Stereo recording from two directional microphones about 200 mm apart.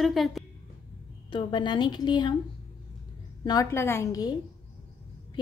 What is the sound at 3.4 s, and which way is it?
Speech, 15° left (ahead or behind).